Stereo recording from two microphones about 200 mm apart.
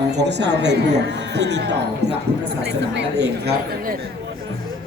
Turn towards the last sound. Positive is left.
turn(degrees=-55)  # may be behind; listen again after turning